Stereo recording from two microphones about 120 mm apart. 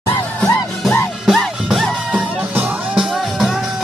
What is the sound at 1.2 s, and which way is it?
Music, centre (ahead or behind).